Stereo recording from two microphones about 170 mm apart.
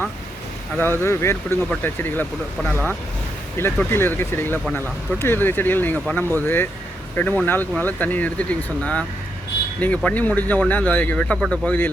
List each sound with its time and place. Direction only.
0.8 s speech: 15° left (ahead or behind)